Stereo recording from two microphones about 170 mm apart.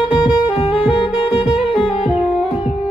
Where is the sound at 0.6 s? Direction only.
35° left (ahead or behind).